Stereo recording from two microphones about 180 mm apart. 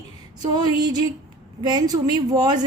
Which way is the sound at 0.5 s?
20° right (ahead or behind).